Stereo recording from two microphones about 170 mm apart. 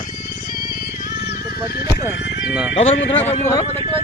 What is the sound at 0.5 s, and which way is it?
Music, 60° left (ahead or behind).